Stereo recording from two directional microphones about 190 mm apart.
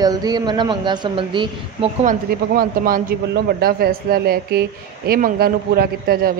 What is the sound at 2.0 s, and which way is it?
A man's voice, 45° right (ahead or behind).